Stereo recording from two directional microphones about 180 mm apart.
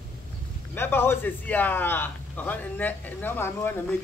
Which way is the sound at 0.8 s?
15° left (ahead or behind).